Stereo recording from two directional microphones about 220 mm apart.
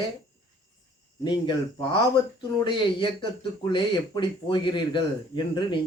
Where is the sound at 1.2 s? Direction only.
20° left (ahead or behind).